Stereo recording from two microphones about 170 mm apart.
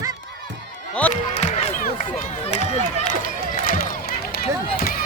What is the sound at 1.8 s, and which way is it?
Run, 45° left (ahead or behind).